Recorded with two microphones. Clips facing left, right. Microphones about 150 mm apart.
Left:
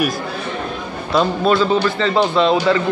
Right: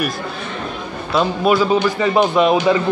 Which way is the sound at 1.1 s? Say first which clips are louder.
Even; 10° right (ahead or behind).